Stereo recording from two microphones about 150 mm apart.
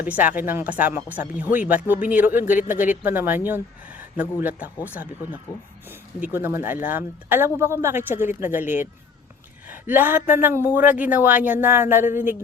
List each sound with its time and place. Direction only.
0.0 s speech: 10° right (ahead or behind)
5.5 s speech: 20° left (ahead or behind)
5.9 s speech: 10° right (ahead or behind)